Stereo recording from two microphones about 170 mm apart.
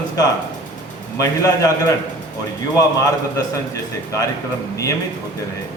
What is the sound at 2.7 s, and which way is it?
Speech, 20° left (ahead or behind).